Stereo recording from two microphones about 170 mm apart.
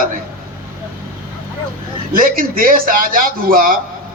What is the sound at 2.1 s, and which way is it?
Speech, 55° right (ahead or behind).